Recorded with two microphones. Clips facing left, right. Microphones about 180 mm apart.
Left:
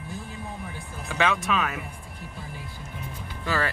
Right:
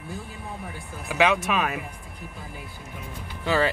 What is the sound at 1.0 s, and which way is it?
Speech, 15° right (ahead or behind).